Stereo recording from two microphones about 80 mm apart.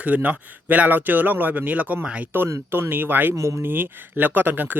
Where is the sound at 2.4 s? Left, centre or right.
Right.